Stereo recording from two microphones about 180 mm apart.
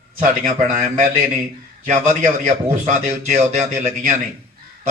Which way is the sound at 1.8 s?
45° right (ahead or behind).